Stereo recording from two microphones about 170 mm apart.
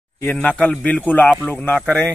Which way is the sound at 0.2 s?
10° left (ahead or behind).